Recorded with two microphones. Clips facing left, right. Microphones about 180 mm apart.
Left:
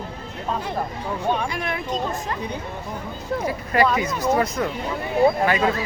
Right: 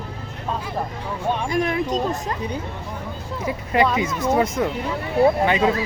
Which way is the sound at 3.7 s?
20° right (ahead or behind).